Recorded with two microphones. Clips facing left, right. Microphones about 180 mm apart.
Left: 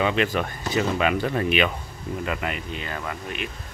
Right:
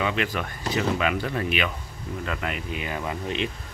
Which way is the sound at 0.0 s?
25° left (ahead or behind).